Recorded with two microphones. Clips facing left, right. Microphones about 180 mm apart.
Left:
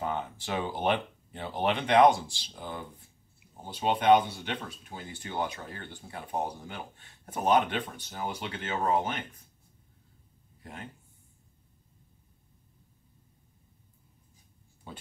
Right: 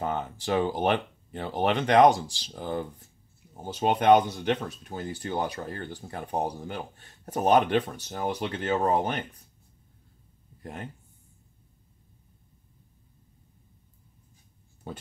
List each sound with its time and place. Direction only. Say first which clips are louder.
0.0 s speech: right 3 dB; 45° right (ahead or behind)